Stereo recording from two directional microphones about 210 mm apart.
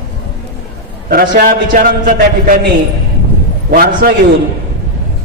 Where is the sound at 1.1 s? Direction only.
40° right (ahead or behind).